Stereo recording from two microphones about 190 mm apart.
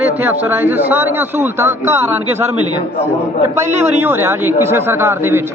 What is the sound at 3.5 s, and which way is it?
Speech, 10° right (ahead or behind).